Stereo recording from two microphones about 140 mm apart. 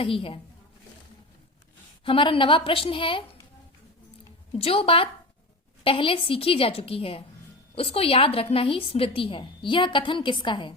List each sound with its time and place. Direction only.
0.0 s a woman's voice: 40° left (ahead or behind)
2.0 s a woman's voice: 40° left (ahead or behind)
4.5 s a woman's voice: 45° left (ahead or behind)